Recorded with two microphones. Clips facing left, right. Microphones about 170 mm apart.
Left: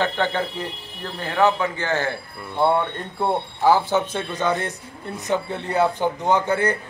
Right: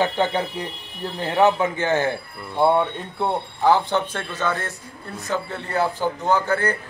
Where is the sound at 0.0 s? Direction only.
15° right (ahead or behind).